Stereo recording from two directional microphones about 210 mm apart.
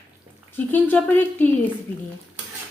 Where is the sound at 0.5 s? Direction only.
10° left (ahead or behind).